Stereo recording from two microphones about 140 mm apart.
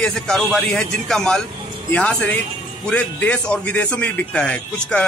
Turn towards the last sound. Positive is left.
turn(degrees=10)  # may be behind; listen again after turning